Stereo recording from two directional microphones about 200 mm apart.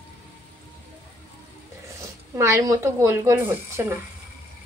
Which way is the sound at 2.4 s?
15° right (ahead or behind).